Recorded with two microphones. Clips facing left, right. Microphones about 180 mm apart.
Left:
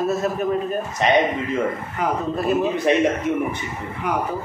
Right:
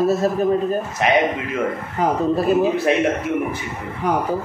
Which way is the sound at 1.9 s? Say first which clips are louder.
Right 8 dB; 35° right (ahead or behind).